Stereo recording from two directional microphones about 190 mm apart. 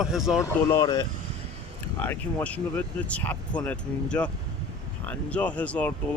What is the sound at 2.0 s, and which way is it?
Speech, 10° left (ahead or behind).